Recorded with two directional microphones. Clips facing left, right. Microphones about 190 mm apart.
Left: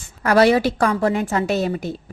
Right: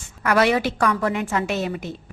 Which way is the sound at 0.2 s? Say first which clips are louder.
Left 4 dB; 35° left (ahead or behind).